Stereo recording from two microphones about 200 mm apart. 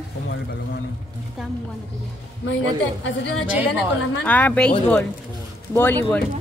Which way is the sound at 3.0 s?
65° left (ahead or behind).